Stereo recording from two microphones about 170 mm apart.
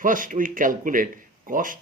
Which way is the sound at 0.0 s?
50° right (ahead or behind).